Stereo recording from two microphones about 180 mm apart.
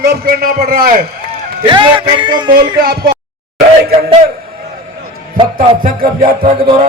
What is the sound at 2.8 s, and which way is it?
Speech, 55° right (ahead or behind).